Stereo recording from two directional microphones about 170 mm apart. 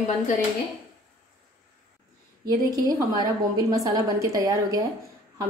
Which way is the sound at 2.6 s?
20° right (ahead or behind).